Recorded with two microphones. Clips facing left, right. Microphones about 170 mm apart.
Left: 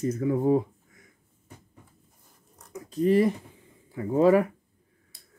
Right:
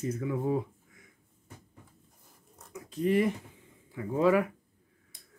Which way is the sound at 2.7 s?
35° left (ahead or behind).